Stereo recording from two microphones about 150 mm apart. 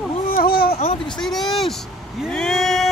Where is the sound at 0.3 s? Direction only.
80° left.